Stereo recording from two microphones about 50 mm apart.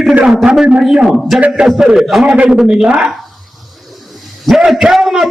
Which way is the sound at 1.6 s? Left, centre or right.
Centre.